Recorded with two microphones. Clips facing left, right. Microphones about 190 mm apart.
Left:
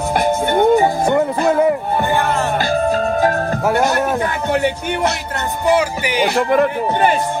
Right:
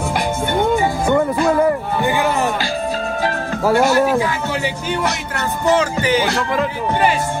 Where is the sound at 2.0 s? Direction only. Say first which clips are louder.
Right 2 dB; 15° right (ahead or behind).